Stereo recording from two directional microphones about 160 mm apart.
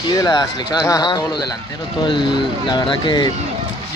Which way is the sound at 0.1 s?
25° left (ahead or behind).